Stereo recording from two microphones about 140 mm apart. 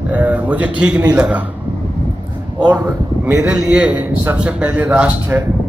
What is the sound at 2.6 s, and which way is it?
Speech, 25° right (ahead or behind).